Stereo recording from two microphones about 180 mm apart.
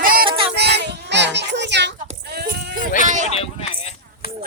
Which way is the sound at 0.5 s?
65° right (ahead or behind).